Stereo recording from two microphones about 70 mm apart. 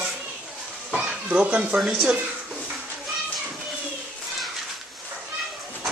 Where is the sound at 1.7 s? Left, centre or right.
Centre.